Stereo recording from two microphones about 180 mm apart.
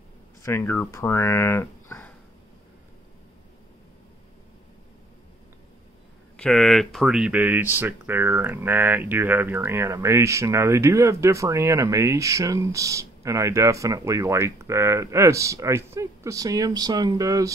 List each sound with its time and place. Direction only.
0.4 s speech: 15° left (ahead or behind)
6.3 s speech: 5° left (ahead or behind); by 17.5 s 20° right (ahead or behind)